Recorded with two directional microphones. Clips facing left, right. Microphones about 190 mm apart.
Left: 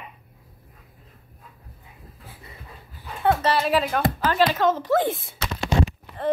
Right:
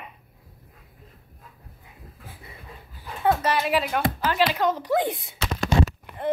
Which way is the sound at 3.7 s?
10° right (ahead or behind).